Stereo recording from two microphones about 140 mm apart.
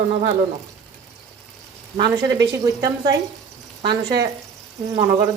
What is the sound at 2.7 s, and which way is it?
A woman's voice, 25° right (ahead or behind).